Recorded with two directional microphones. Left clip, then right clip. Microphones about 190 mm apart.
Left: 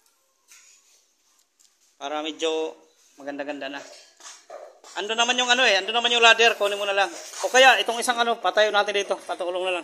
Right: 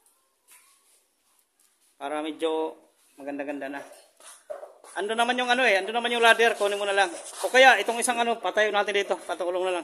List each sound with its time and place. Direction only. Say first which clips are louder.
2.0 s a man's voice: left 2 dB; 25° right (ahead or behind)
4.9 s a man's voice: left 2 dB; 25° right (ahead or behind)